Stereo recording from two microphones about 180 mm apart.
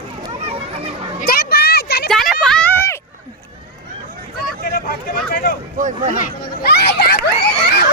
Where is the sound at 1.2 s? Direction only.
60° left (ahead or behind).